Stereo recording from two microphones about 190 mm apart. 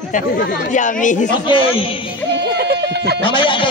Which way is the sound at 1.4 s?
25° left (ahead or behind).